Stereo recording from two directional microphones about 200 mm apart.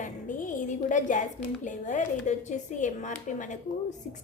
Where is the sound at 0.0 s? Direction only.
40° left (ahead or behind).